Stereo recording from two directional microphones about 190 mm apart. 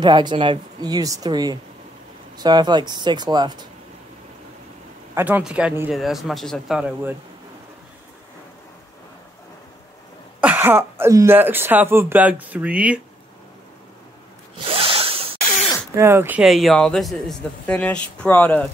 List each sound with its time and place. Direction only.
0.0 s speech: 25° right (ahead or behind)
5.1 s speech: 10° right (ahead or behind)
10.4 s speech: 10° right (ahead or behind)
14.6 s a sound: 30° right (ahead or behind)
15.4 s a sound: 40° left (ahead or behind)
15.9 s speech: 15° right (ahead or behind); by 18.7 s 10° left (ahead or behind)